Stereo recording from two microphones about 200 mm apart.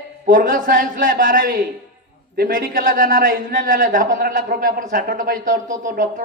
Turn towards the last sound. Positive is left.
turn(degrees=-40)  # may be behind; listen again after turning